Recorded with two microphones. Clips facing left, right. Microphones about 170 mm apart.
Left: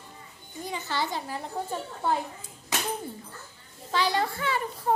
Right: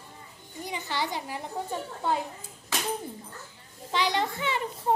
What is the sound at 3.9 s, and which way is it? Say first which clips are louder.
A child's voice: left 1 dB; 20° right (ahead or behind).